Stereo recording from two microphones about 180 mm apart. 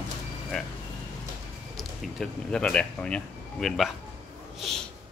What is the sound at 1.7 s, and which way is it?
Speech, 5° left (ahead or behind).